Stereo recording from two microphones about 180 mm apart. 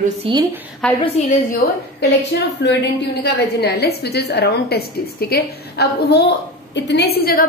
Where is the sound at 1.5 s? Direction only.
70° left (ahead or behind).